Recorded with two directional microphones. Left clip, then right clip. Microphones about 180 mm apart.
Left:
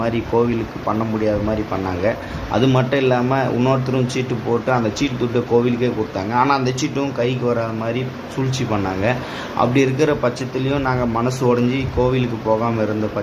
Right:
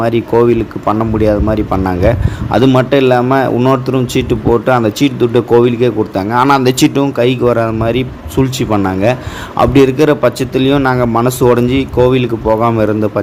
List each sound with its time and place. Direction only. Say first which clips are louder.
0.0 s a man's voice: right 8 dB; 40° right (ahead or behind)